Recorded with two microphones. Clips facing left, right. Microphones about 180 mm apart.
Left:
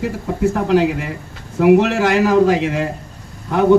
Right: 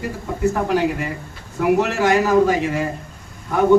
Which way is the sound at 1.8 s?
70° left (ahead or behind).